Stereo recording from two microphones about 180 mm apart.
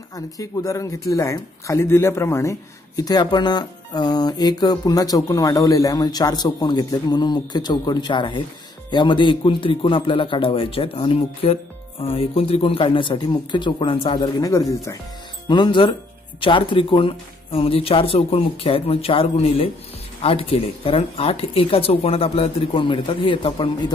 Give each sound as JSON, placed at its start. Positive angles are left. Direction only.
{"t": 0.1, "sound": "speech", "side_deg": 20}